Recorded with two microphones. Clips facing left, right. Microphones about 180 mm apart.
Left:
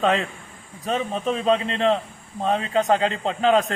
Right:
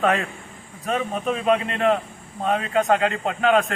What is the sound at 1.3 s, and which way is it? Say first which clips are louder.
A man's voice: even; 30° left (ahead or behind).